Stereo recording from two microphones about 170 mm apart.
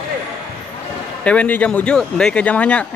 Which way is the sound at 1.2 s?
10° left (ahead or behind).